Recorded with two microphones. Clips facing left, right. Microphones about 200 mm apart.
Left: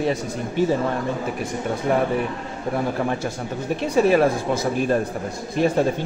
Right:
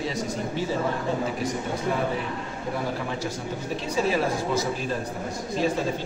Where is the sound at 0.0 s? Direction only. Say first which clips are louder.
Left 5 dB; 55° left (ahead or behind).